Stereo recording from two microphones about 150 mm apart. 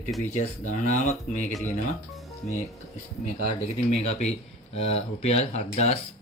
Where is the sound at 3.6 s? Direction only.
45° left (ahead or behind).